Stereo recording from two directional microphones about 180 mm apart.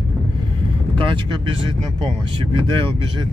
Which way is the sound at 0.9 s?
30° right (ahead or behind).